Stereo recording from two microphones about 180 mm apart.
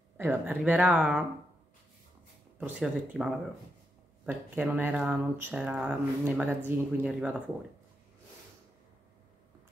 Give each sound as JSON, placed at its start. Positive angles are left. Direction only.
{"t": 0.2, "sound": "speech", "side_deg": -10}
{"t": 2.6, "sound": "speech", "side_deg": -5}
{"t": 4.3, "sound": "speech", "side_deg": -10}